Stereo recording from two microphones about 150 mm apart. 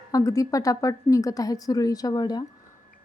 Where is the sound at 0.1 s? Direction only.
20° left (ahead or behind).